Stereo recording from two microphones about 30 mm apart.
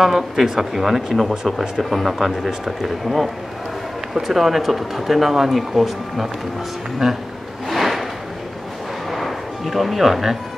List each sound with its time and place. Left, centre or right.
0.0 s speech: centre
1.3 s speech: centre
1.8 s speech: centre
7.0 s speech: centre
7.7 s a sound: centre
9.1 s a sound: centre